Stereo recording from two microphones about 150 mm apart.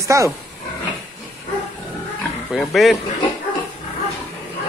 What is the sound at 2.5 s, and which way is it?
Speech, centre (ahead or behind).